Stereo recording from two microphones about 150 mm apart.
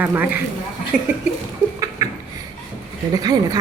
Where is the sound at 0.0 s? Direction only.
10° right (ahead or behind).